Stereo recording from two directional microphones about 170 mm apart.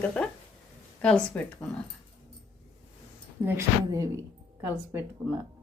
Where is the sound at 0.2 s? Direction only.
5° left (ahead or behind).